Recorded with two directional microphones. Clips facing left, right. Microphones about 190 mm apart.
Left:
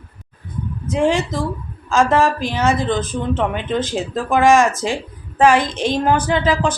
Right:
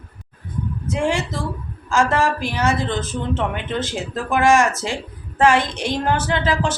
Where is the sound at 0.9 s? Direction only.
20° left (ahead or behind).